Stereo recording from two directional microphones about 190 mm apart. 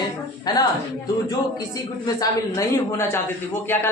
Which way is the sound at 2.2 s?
15° left (ahead or behind).